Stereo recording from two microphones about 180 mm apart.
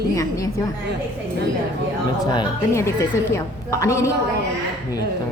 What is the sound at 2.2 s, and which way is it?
A woman's voice, 20° left (ahead or behind).